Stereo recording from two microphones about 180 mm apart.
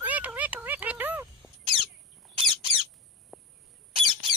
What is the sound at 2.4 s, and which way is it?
Squawk, 30° right (ahead or behind).